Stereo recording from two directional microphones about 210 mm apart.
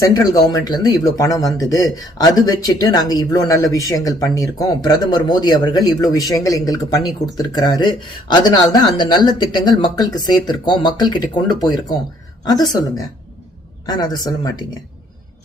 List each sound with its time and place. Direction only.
0.0 s speech: 15° left (ahead or behind)
13.8 s speech: 20° left (ahead or behind)